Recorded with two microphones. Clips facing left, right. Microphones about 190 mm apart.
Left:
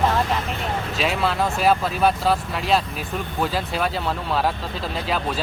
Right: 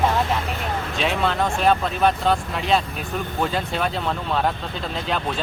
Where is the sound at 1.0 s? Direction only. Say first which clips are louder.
Even; centre (ahead or behind).